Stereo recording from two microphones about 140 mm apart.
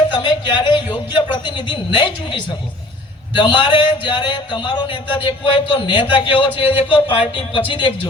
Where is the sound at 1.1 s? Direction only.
35° left (ahead or behind).